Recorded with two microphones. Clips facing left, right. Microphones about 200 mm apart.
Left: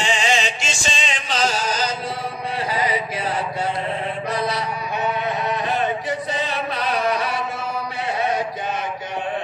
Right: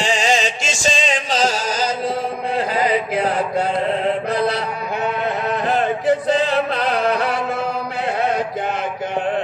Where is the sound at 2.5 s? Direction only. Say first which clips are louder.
Right 4 dB; 50° right (ahead or behind).